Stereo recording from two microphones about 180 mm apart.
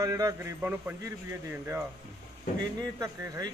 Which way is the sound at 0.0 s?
20° right (ahead or behind).